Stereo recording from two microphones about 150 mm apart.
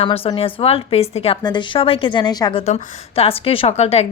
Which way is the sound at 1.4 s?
30° left (ahead or behind).